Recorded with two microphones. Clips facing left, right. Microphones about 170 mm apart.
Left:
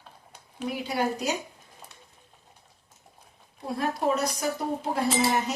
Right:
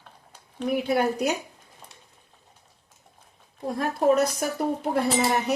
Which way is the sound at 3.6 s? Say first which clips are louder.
Right 5 dB; 45° right (ahead or behind).